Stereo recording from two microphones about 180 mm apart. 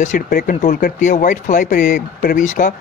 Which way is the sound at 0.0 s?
45° left (ahead or behind).